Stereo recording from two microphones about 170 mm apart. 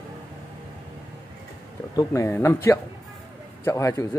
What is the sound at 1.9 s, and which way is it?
A man's voice, 15° left (ahead or behind).